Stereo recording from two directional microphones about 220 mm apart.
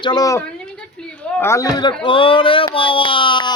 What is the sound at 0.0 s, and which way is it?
Speech, 20° left (ahead or behind).